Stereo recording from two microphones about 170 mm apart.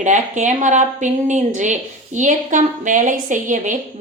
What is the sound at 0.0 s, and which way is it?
A woman's voice, 45° right (ahead or behind).